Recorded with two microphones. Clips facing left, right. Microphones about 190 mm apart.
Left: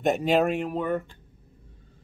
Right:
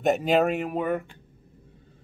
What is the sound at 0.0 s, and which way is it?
Speech, centre (ahead or behind).